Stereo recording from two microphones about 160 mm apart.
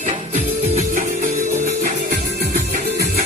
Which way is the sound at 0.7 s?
50° right (ahead or behind).